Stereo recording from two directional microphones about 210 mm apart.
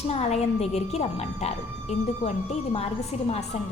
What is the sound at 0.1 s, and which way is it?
A woman's voice, 30° left (ahead or behind).